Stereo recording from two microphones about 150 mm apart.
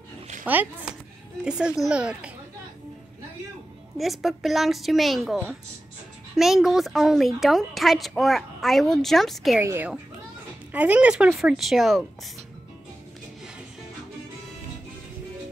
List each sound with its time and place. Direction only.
0.5 s a woman's voice: 10° right (ahead or behind)
4.0 s a woman's voice: centre (ahead or behind)
9.6 s a woman's voice: 15° right (ahead or behind)